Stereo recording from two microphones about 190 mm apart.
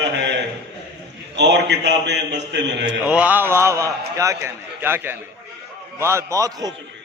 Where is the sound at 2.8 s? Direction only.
5° right (ahead or behind).